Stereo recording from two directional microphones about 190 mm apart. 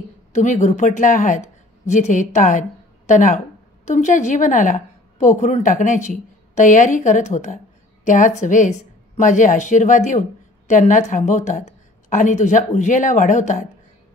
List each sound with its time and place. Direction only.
0.3 s a woman's voice: 40° left (ahead or behind)